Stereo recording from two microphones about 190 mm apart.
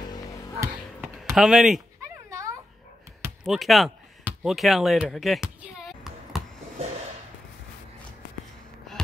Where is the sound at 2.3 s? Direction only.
15° right (ahead or behind).